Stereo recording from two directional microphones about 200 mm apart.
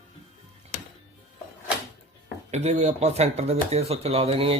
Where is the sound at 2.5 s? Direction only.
35° right (ahead or behind).